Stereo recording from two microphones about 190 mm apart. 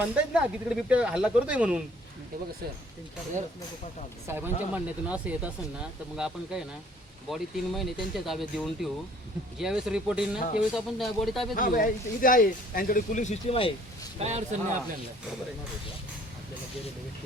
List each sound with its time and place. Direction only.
0.0 s speech: 5° right (ahead or behind)
4.3 s speech: 10° right (ahead or behind)
11.5 s speech: 45° left (ahead or behind); by 13.7 s 30° left (ahead or behind)
14.3 s a man's voice: 35° right (ahead or behind)